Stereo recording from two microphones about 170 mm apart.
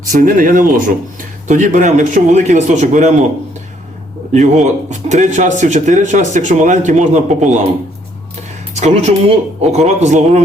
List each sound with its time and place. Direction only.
0.0 s speech: 50° right (ahead or behind)
4.3 s speech: 45° right (ahead or behind)
8.7 s speech: 40° right (ahead or behind)